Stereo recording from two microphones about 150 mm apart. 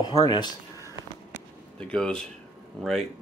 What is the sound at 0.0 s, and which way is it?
Speech, 25° left (ahead or behind).